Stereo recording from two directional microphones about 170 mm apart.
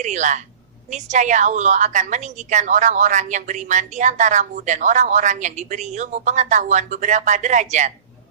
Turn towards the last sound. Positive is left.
turn(degrees=-45)  # may be behind; listen again after turning